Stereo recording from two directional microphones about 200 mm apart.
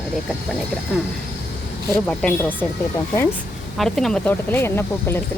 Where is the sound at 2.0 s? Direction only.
5° left (ahead or behind).